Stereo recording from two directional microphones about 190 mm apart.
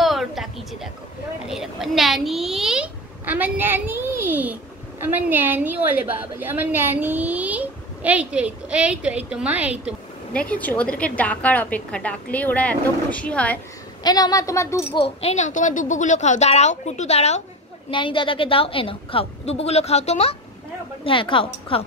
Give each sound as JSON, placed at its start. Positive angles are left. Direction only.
{"t": 0.0, "sound": "a sound", "side_deg": 0}
{"t": 1.5, "sound": "a child's voice", "side_deg": 0}
{"t": 10.3, "sound": "a woman's voice", "side_deg": 5}
{"t": 14.0, "sound": "a woman's voice", "side_deg": 20}
{"t": 15.0, "sound": "a woman's voice", "side_deg": 30}